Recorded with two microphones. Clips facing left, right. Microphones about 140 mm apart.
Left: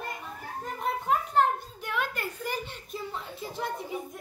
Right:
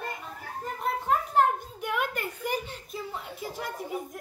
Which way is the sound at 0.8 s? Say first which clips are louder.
Right 1 dB; centre (ahead or behind).